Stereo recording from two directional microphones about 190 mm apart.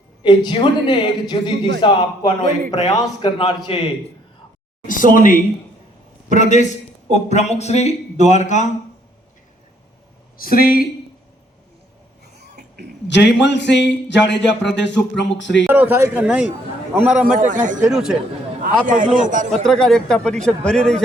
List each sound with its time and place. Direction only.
0.2 s a man's voice: 25° left (ahead or behind)
4.9 s a man's voice: 45° left (ahead or behind)
10.3 s speech: 50° left (ahead or behind)
12.2 s a sound: 60° right (ahead or behind)
13.1 s speech: 65° left (ahead or behind)
15.7 s speech: 10° right (ahead or behind)
17.3 s a man's voice: 40° right (ahead or behind)
17.8 s speech: 5° right (ahead or behind)
18.6 s a man's voice: 45° right (ahead or behind)
19.6 s speech: centre (ahead or behind)